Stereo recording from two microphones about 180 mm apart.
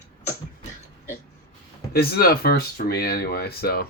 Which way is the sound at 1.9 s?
60° left (ahead or behind).